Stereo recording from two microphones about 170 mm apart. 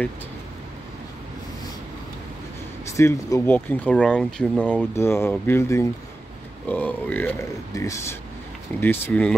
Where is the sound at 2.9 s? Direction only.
15° left (ahead or behind).